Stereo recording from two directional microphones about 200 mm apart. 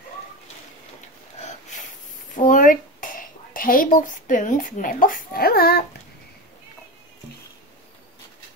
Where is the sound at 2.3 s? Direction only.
40° left (ahead or behind).